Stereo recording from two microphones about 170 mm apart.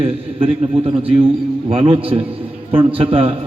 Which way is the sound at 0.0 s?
35° right (ahead or behind).